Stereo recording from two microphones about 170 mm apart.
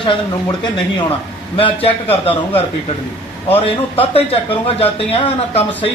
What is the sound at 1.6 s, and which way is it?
Speech, 35° left (ahead or behind).